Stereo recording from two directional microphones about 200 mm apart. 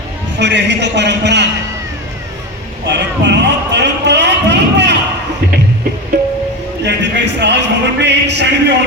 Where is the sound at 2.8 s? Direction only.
60° right (ahead or behind).